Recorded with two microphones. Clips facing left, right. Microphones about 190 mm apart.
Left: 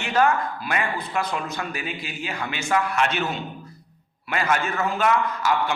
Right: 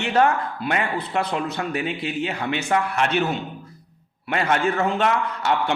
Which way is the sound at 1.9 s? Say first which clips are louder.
Right 8 dB; 65° right (ahead or behind).